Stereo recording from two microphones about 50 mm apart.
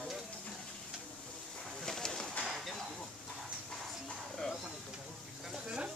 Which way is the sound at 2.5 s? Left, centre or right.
Centre.